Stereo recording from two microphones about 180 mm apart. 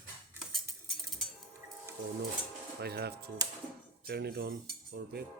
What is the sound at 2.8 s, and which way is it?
Cutlery, 60° right (ahead or behind).